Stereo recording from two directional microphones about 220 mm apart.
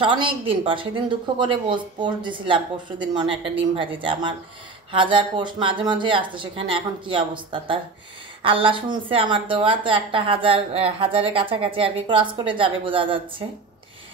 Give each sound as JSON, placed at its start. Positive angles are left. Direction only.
{"t": 0.0, "sound": "speech", "side_deg": -20}